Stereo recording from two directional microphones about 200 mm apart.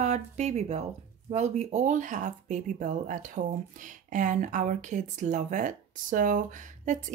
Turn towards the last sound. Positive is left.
turn(degrees=-40)  # may be behind; listen again after turning